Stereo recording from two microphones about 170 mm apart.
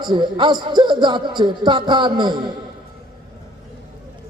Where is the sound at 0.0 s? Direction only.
25° right (ahead or behind).